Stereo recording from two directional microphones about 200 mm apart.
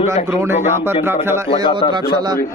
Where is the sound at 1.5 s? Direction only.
25° left (ahead or behind).